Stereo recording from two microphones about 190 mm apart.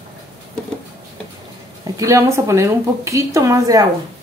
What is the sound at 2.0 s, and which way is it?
A woman's voice, 15° right (ahead or behind).